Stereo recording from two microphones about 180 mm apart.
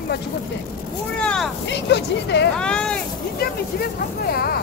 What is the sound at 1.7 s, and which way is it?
Speech, 70° left (ahead or behind).